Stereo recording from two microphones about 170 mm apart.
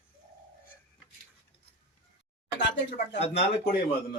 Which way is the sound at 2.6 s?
90° left.